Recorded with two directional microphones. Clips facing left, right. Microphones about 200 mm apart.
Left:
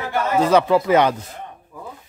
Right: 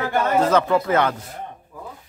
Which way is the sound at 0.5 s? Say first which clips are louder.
Left 3 dB; 15° left (ahead or behind).